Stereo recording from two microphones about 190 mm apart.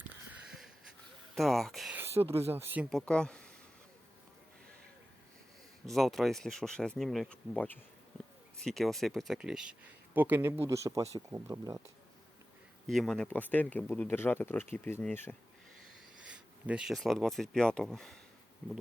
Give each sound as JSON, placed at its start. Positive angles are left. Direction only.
{"t": 1.4, "sound": "speech", "side_deg": 0}
{"t": 2.0, "sound": "speech", "side_deg": -15}
{"t": 2.9, "sound": "speech", "side_deg": 5}
{"t": 5.8, "sound": "speech", "side_deg": 0}
{"t": 12.9, "sound": "speech", "side_deg": 0}
{"t": 16.3, "sound": "speech", "side_deg": -5}